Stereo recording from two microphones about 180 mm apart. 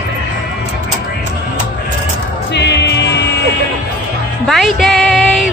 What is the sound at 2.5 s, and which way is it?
Music, 70° left (ahead or behind).